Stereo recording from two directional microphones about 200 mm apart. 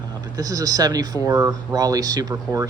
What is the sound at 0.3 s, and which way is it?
Speech, 15° right (ahead or behind).